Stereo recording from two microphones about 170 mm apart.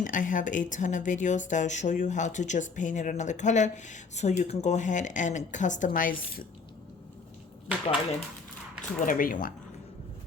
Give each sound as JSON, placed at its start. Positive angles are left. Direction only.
{"t": 0.0, "sound": "speech", "side_deg": 50}
{"t": 8.8, "sound": "speech", "side_deg": 50}